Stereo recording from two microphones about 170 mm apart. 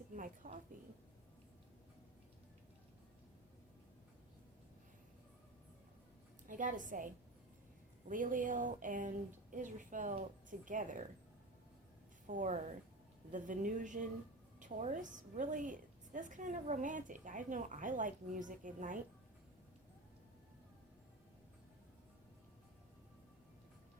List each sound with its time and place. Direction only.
0.1 s a woman's voice: 50° right (ahead or behind)
6.5 s a woman's voice: 50° right (ahead or behind)
12.3 s a woman's voice: 50° right (ahead or behind)